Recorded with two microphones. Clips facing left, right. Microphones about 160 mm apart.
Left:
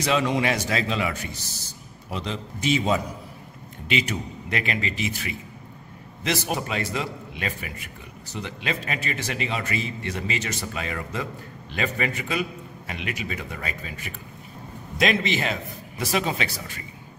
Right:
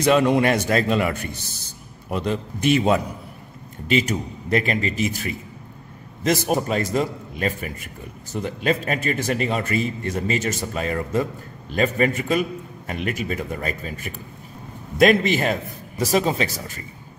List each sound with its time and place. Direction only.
0.0 s a man's voice: 55° right (ahead or behind)
3.9 s a man's voice: 45° right (ahead or behind)